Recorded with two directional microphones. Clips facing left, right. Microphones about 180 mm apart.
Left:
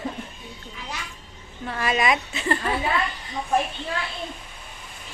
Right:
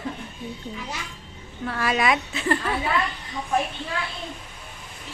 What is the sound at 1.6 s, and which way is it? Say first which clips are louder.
Speech: right 1 dB; 15° left (ahead or behind).